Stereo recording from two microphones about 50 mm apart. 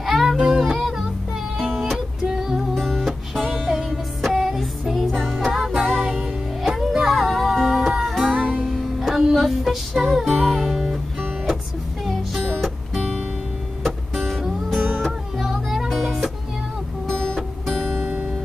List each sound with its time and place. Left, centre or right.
0.0 s music: centre
2.2 s music: centre
2.7 s music: centre
8.3 s music: right
8.6 s music: centre
12.5 s music: centre
17.1 s music: centre
18.0 s music: right